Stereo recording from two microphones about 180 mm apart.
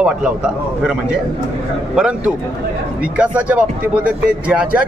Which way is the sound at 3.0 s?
5° right (ahead or behind).